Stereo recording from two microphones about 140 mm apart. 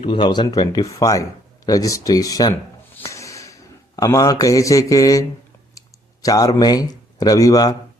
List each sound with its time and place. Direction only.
0.0 s a man's voice: 35° left (ahead or behind)
3.0 s a sound: 20° left (ahead or behind)
6.2 s a man's voice: 25° left (ahead or behind)